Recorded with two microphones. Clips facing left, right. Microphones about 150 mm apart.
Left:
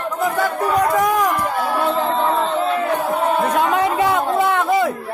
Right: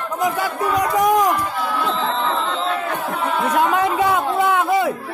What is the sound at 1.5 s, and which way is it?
Music, 50° left (ahead or behind).